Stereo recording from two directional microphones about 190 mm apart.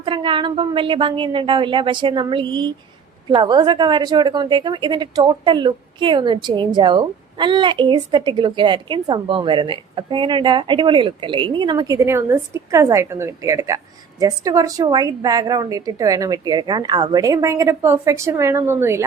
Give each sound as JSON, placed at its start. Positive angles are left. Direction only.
{"t": 0.0, "sound": "a woman's voice", "side_deg": -25}